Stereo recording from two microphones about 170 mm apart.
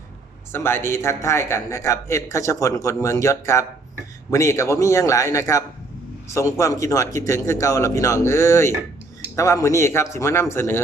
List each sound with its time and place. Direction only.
0.5 s a man's voice: 15° left (ahead or behind)